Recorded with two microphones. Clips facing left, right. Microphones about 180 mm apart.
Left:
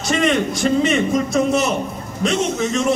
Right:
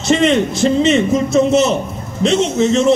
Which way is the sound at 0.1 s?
25° right (ahead or behind).